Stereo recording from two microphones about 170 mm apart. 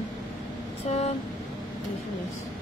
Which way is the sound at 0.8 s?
40° left (ahead or behind).